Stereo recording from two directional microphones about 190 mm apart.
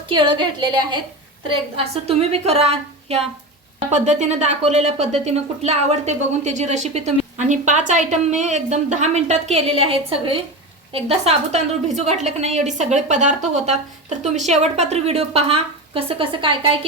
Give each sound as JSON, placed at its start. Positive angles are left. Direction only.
{"t": 0.1, "sound": "a woman's voice", "side_deg": -25}